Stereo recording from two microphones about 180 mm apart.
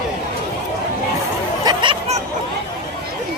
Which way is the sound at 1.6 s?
25° right (ahead or behind).